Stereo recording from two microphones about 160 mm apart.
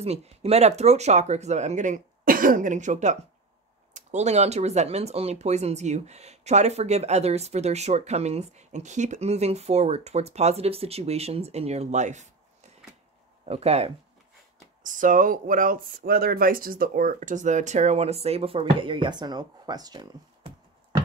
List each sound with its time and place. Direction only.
0.0 s speech: 40° right (ahead or behind)
13.5 s speech: 40° right (ahead or behind)
14.8 s speech: 55° right (ahead or behind); by 20.5 s 25° right (ahead or behind)